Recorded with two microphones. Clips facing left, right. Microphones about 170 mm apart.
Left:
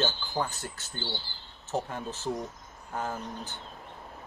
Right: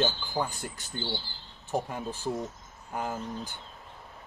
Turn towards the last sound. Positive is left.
turn(degrees=-10)  # may be behind; listen again after turning